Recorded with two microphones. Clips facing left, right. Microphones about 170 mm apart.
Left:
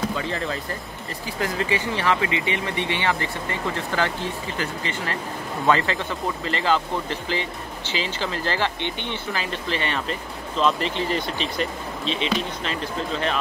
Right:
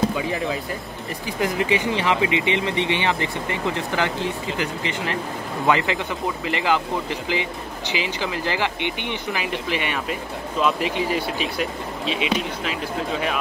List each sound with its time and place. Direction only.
0.1 s speech: 10° right (ahead or behind)